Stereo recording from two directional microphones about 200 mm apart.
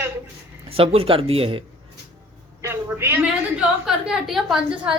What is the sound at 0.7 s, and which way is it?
Speech, 30° right (ahead or behind).